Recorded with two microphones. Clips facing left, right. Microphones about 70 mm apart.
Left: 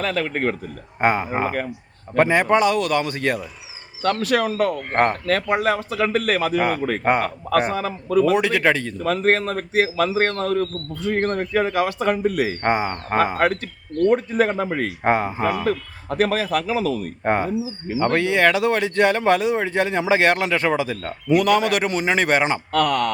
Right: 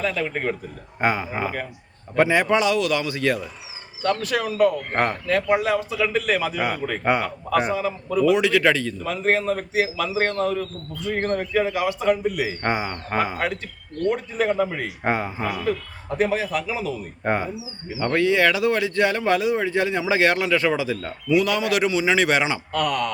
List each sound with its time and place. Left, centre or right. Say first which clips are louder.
0.0 s a man's voice: left 2 dB; left
0.3 s a man's voice: left 3 dB; left
1.0 s a man's voice: left 3 dB; left
4.0 s a man's voice: left 3 dB; left
7.7 s a man's voice: left 2 dB; left
9.0 s a man's voice: left 3 dB; left
12.6 s a man's voice: left 4 dB; left
15.0 s a man's voice: left 4 dB; left
16.0 s a man's voice: left 2 dB; left
17.2 s a man's voice: left 3 dB; left
17.8 s a man's voice: even; left
22.7 s a man's voice: left 5 dB; left